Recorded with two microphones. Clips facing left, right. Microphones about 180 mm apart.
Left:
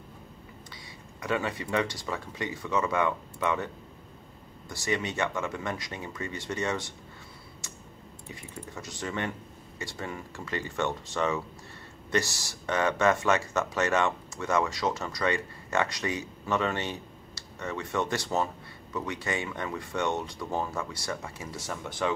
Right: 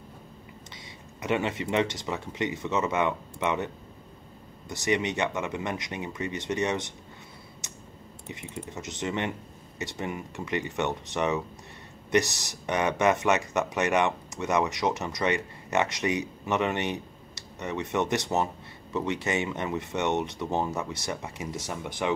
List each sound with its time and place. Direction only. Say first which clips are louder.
1.2 s speech: right 3 dB; 20° right (ahead or behind)
7.6 s clicking: even; 20° right (ahead or behind)
8.3 s speech: right 4 dB; 20° right (ahead or behind)